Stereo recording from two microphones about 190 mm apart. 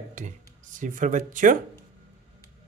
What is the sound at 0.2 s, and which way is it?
Speech, 40° right (ahead or behind).